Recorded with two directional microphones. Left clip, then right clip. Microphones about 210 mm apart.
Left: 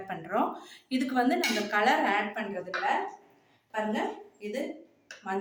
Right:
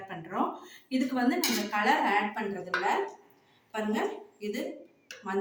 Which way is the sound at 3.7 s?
10° left (ahead or behind).